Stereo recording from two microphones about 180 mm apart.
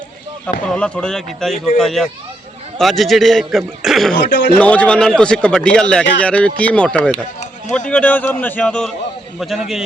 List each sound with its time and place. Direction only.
0.7 s a man's voice: 5° left (ahead or behind)
4.3 s speech: 65° left (ahead or behind)
4.6 s a man's voice: 5° left (ahead or behind)